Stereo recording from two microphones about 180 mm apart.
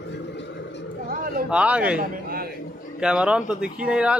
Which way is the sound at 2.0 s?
55° right (ahead or behind).